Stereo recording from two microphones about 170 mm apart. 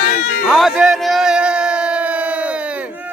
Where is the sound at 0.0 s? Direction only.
45° left (ahead or behind).